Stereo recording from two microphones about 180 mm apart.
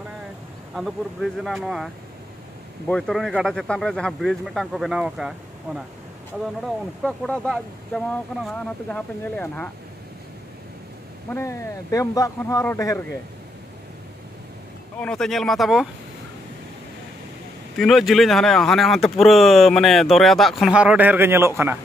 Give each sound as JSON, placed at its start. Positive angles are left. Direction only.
{"t": 0.7, "sound": "speech", "side_deg": 0}
{"t": 2.9, "sound": "speech", "side_deg": 0}
{"t": 7.0, "sound": "speech", "side_deg": 5}
{"t": 11.2, "sound": "speech", "side_deg": 15}
{"t": 15.0, "sound": "speech", "side_deg": 5}
{"t": 17.7, "sound": "speech", "side_deg": 0}